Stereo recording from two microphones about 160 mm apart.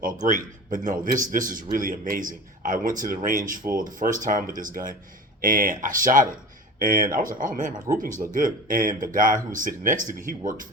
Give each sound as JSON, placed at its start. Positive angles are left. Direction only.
{"t": 0.0, "sound": "speech", "side_deg": -50}